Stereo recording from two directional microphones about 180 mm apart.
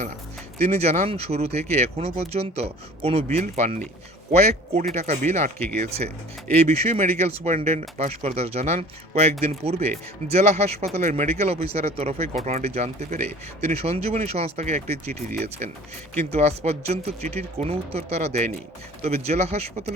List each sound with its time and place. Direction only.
0.7 s speech: 35° right (ahead or behind)
6.7 s speech: 35° right (ahead or behind)